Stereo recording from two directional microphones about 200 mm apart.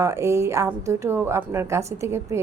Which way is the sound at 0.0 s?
15° right (ahead or behind).